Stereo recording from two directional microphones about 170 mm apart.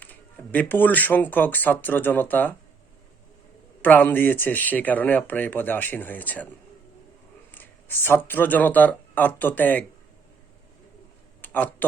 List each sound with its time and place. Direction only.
0.0 s speech: 10° left (ahead or behind)
3.8 s speech: 10° left (ahead or behind)
7.5 s speech: 10° left (ahead or behind)
11.4 s speech: 10° left (ahead or behind)